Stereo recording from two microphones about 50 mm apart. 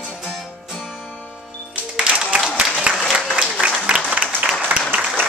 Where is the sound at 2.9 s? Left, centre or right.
Right.